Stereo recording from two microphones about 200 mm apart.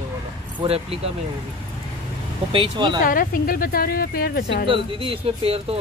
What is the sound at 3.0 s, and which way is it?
Speech, 45° left (ahead or behind).